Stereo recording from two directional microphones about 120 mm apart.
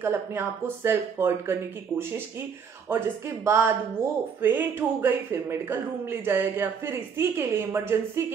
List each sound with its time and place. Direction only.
0.0 s speech: 20° right (ahead or behind)